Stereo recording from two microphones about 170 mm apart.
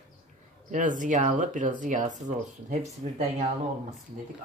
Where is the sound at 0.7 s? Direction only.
50° right (ahead or behind).